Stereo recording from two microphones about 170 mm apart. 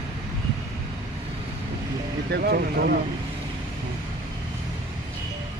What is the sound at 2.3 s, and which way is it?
Speech, 70° right (ahead or behind).